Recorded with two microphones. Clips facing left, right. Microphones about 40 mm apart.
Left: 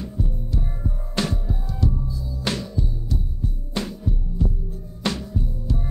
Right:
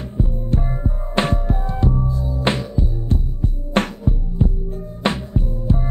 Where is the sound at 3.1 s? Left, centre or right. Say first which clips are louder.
Right 6 dB; right.